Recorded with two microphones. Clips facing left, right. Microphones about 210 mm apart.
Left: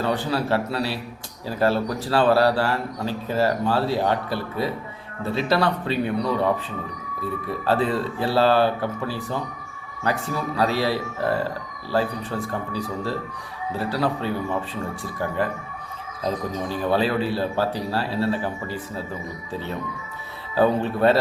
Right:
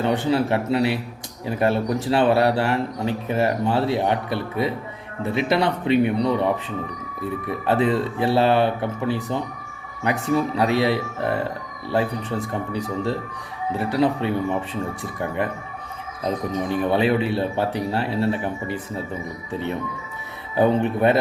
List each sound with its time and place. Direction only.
0.0 s a man's voice: 20° right (ahead or behind)
7.7 s a man's voice: 20° right (ahead or behind)
16.2 s a man's voice: 20° right (ahead or behind)
20.6 s a man's voice: 20° right (ahead or behind)